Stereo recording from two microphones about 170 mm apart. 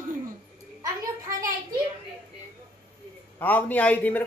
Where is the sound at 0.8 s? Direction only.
20° right (ahead or behind).